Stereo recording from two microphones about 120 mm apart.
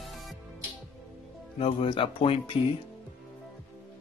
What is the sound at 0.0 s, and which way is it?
Music, centre (ahead or behind).